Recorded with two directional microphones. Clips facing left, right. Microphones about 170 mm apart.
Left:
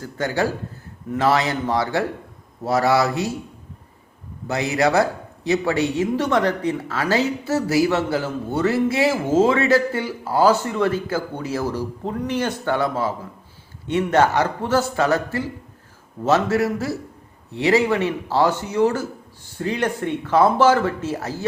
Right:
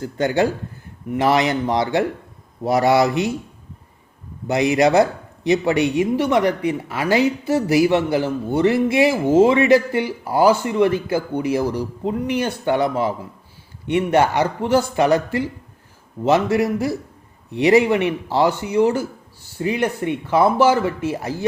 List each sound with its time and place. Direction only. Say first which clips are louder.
0.0 s a man's voice: right 4 dB; 20° right (ahead or behind)
4.4 s a man's voice: right 4 dB; 15° right (ahead or behind)